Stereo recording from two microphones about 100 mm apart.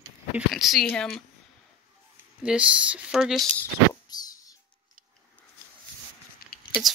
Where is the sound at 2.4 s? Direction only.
10° right (ahead or behind).